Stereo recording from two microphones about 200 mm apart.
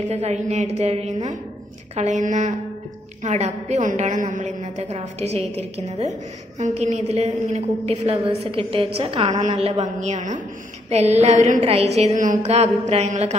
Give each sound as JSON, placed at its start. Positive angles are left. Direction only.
{"t": 0.0, "sound": "a woman's voice", "side_deg": -35}